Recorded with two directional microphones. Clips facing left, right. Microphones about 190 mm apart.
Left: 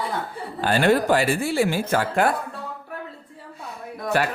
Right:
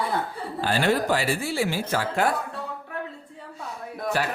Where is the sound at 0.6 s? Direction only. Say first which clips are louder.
Left 4 dB; 55° left (ahead or behind).